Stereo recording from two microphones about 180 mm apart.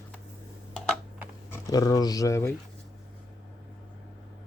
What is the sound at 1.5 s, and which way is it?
Speech, 20° left (ahead or behind).